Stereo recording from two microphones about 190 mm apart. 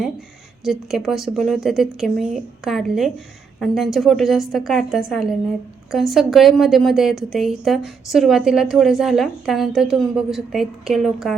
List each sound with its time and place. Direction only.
0.6 s a woman's voice: centre (ahead or behind)